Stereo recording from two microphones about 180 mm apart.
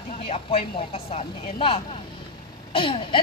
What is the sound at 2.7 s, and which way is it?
Throat clearing, 30° left (ahead or behind).